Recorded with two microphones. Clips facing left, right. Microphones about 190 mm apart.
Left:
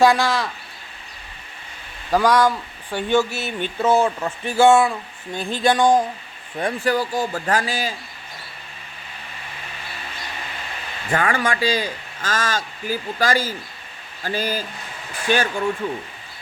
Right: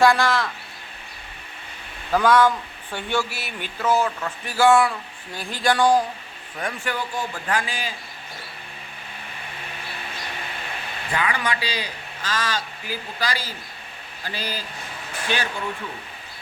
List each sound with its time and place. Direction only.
0.0 s speech: 15° left (ahead or behind)
2.1 s speech: 15° left (ahead or behind)
6.6 s a man's voice: 35° left (ahead or behind)
11.1 s a man's voice: 50° left (ahead or behind)